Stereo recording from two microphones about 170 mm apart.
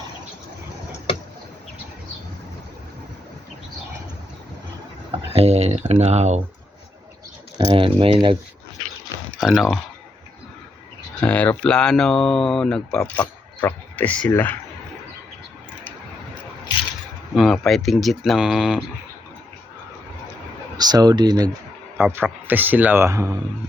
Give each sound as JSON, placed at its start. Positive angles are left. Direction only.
{"t": 5.3, "sound": "speech", "side_deg": -40}
{"t": 7.7, "sound": "speech", "side_deg": -30}
{"t": 9.4, "sound": "speech", "side_deg": 0}
{"t": 11.3, "sound": "speech", "side_deg": 5}
{"t": 17.3, "sound": "speech", "side_deg": 0}
{"t": 20.7, "sound": "speech", "side_deg": -25}
{"t": 21.9, "sound": "speech", "side_deg": -15}